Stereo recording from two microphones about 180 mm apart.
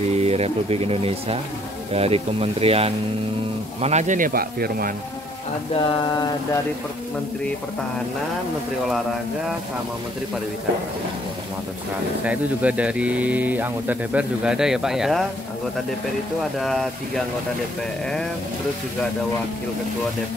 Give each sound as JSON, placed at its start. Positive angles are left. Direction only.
{"t": 0.1, "sound": "speech", "side_deg": -35}
{"t": 5.8, "sound": "mantra", "side_deg": 25}
{"t": 12.3, "sound": "speech", "side_deg": -5}
{"t": 16.5, "sound": "speech", "side_deg": 0}